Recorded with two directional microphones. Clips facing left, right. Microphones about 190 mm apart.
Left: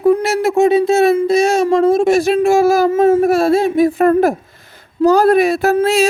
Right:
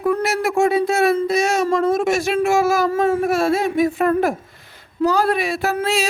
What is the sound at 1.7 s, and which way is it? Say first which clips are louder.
Speech: left 8 dB; 30° left (ahead or behind).